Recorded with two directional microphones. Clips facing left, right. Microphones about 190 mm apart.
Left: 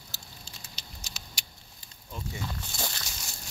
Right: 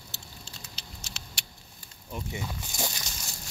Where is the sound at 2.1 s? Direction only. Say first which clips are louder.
Right 2 dB; 15° right (ahead or behind).